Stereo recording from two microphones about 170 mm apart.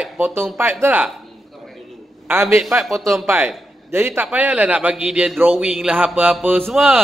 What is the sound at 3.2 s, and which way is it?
A man's voice, 10° right (ahead or behind).